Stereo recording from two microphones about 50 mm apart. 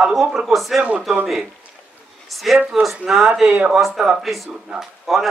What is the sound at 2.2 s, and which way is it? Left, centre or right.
Speech, centre.